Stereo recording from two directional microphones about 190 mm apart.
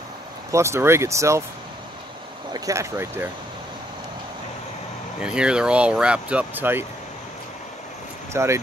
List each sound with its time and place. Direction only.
0.5 s speech: 15° right (ahead or behind)
2.5 s speech: 15° right (ahead or behind)
5.2 s speech: 5° right (ahead or behind)
8.3 s speech: 15° right (ahead or behind)